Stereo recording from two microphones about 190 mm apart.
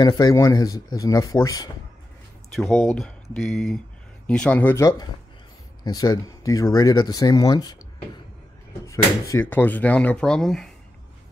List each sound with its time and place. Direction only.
0.0 s speech: 20° left (ahead or behind)
2.8 s speech: centre (ahead or behind); by 7.7 s 20° left (ahead or behind)
8.8 s speech: 15° left (ahead or behind)